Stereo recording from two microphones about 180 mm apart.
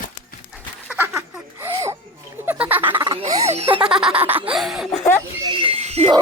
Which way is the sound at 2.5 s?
10° right (ahead or behind).